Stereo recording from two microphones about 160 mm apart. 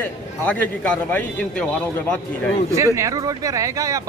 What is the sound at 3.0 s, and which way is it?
Speech, 20° right (ahead or behind).